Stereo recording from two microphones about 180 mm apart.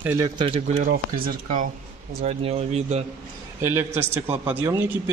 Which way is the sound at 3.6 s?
15° right (ahead or behind).